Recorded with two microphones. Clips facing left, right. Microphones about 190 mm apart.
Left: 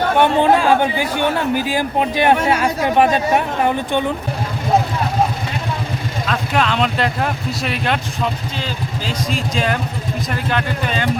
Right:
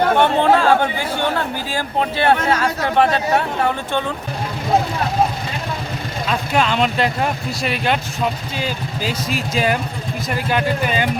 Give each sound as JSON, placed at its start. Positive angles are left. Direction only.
{"t": 0.2, "sound": "speech", "side_deg": 15}
{"t": 6.2, "sound": "speech", "side_deg": 0}